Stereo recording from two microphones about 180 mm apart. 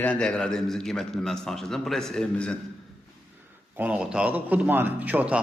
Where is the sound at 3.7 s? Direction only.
10° right (ahead or behind).